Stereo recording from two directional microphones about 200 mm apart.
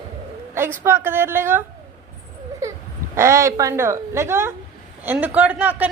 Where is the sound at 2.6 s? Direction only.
15° right (ahead or behind).